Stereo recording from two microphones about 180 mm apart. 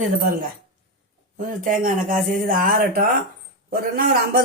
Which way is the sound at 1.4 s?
50° right (ahead or behind).